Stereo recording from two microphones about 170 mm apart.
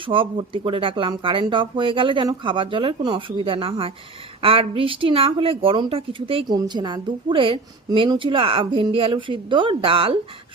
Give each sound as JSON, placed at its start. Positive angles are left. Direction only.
{"t": 0.0, "sound": "a woman's voice", "side_deg": -30}